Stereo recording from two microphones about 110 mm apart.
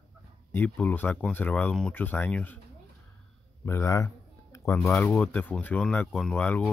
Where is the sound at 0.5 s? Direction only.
15° left (ahead or behind).